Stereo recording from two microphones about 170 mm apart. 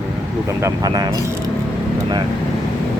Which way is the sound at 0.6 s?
20° right (ahead or behind).